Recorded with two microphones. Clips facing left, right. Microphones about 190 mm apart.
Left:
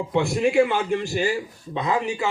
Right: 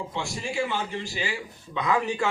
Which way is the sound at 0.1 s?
60° left (ahead or behind).